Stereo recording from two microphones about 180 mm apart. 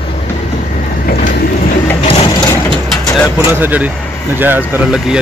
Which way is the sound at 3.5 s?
10° right (ahead or behind).